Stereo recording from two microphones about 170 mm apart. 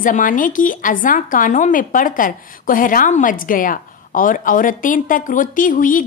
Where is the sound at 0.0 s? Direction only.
50° left (ahead or behind).